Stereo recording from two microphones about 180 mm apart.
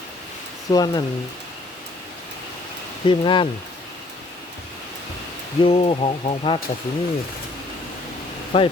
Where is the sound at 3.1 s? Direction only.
25° left (ahead or behind).